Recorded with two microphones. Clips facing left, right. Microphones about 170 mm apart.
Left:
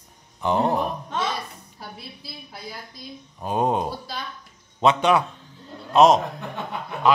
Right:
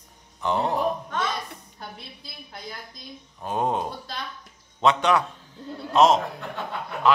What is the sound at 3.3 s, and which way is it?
A man's voice, 15° left (ahead or behind).